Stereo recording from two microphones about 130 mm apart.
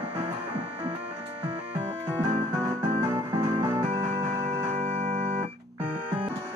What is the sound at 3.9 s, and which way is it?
Music, 55° right (ahead or behind).